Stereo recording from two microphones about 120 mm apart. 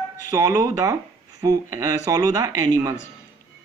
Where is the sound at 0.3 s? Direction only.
30° right (ahead or behind).